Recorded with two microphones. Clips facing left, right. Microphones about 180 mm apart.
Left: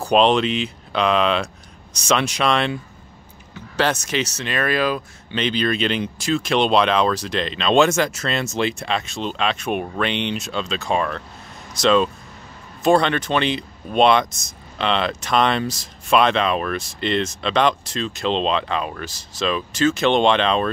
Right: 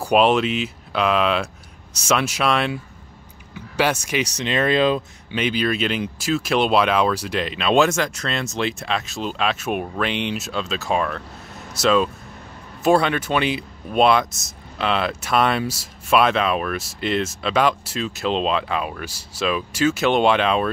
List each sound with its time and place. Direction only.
0.0 s speech: 5° right (ahead or behind); by 5.0 s 25° right (ahead or behind)
5.3 s speech: 10° right (ahead or behind)